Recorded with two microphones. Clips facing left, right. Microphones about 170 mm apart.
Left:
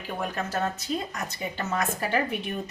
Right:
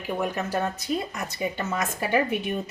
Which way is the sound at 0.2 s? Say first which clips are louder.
Right 1 dB; 10° right (ahead or behind).